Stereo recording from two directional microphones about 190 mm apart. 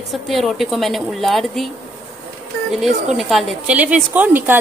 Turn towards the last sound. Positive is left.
turn(degrees=-10)  # may be behind; listen again after turning